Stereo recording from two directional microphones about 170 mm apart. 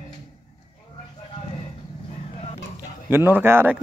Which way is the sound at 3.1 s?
10° right (ahead or behind).